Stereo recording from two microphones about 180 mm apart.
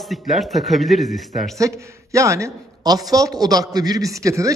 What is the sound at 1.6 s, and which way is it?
A man's voice, 15° right (ahead or behind).